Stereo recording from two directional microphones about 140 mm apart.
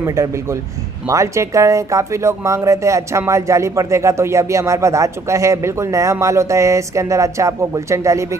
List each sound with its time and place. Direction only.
0.0 s speech: 25° right (ahead or behind)